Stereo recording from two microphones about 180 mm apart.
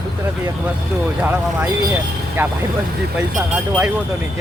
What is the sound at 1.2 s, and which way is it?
Speech, 5° right (ahead or behind).